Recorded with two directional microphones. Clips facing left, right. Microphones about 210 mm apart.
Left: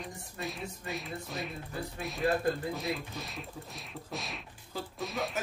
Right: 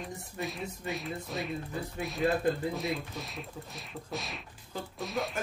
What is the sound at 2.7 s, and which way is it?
Speech, centre (ahead or behind).